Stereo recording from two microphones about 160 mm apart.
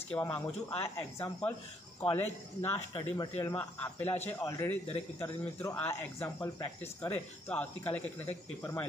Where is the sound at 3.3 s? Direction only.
15° left (ahead or behind).